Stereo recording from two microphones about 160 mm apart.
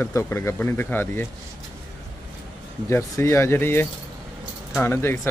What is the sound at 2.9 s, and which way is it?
Speech, 15° left (ahead or behind).